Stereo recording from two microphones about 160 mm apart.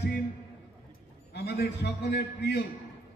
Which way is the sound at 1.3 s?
90° left.